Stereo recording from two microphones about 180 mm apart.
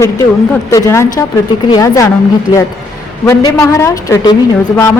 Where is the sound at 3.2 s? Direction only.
15° left (ahead or behind).